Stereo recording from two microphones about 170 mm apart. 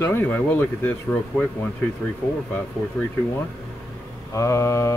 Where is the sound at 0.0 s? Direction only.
15° left (ahead or behind).